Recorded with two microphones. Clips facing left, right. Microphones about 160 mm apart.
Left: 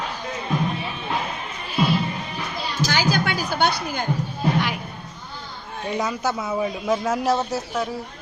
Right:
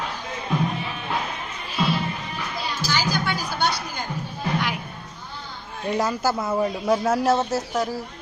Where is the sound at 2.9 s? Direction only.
60° left (ahead or behind).